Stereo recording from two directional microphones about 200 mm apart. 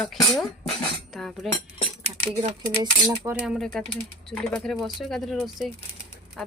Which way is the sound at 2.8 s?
20° right (ahead or behind).